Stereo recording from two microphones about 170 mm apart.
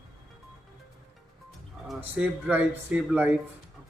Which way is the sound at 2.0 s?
10° right (ahead or behind).